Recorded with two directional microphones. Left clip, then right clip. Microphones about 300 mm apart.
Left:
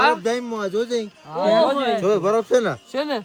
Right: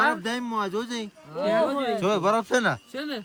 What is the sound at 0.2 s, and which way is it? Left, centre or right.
Speech, right.